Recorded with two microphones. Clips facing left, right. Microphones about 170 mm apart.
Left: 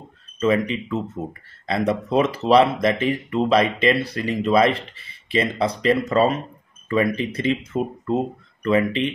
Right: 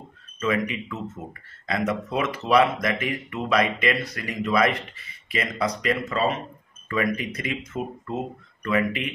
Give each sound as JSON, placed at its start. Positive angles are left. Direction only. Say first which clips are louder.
{"t": 0.4, "sound": "speech", "louder": "left 5 dB", "side_deg": 30}
{"t": 6.9, "sound": "speech", "louder": "left 5 dB", "side_deg": 30}